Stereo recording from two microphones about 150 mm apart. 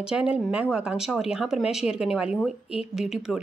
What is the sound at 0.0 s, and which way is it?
A woman's voice, 5° right (ahead or behind).